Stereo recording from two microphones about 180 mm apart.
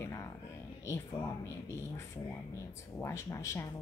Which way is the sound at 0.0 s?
15° left (ahead or behind).